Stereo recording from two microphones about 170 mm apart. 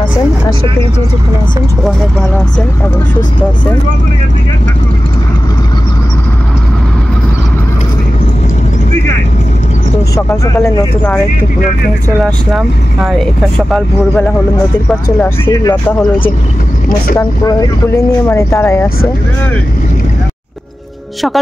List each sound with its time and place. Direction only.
10.1 s speech: 15° left (ahead or behind)
12.2 s speech: centre (ahead or behind); by 15.7 s 15° left (ahead or behind)
17.5 s speech: 20° left (ahead or behind)